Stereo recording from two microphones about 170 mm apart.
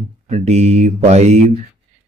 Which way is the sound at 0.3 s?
40° right (ahead or behind).